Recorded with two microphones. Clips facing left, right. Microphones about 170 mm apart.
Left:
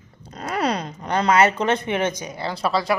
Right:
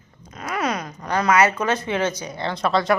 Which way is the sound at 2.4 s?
5° left (ahead or behind).